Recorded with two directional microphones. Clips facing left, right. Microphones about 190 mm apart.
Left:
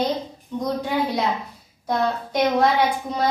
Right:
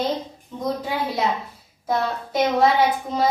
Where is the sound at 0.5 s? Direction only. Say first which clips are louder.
Left 2 dB; 5° right (ahead or behind).